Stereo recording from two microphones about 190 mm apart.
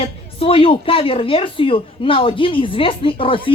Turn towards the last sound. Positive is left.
turn(degrees=25)  # may be behind; listen again after turning